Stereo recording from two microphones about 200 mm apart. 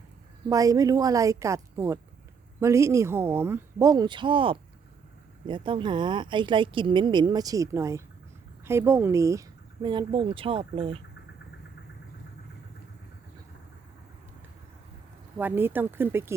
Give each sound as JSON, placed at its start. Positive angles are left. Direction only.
{"t": 0.4, "sound": "a woman's voice", "side_deg": -15}
{"t": 15.4, "sound": "speech", "side_deg": -10}